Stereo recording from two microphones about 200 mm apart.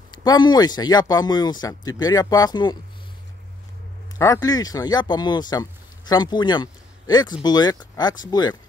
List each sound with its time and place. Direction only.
0.1 s speech: 20° left (ahead or behind)
4.2 s speech: 15° left (ahead or behind)